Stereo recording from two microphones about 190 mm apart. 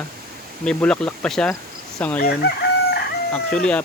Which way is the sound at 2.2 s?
50° left (ahead or behind).